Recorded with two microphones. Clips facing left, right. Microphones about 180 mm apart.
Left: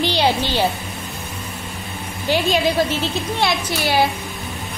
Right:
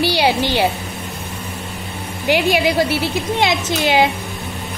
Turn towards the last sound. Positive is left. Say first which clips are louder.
# right 3 dB
turn(degrees=-20)  # may be behind; listen again after turning